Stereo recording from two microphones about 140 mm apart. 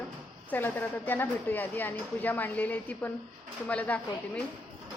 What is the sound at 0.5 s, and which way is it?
A woman's voice, 15° left (ahead or behind).